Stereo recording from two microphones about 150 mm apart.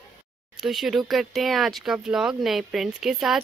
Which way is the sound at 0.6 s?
Centre (ahead or behind).